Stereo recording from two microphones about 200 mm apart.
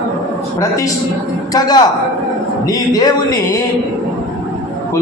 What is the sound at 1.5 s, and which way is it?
Speech, 20° left (ahead or behind).